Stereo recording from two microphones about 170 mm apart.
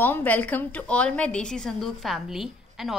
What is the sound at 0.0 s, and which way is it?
A woman's voice, 10° left (ahead or behind).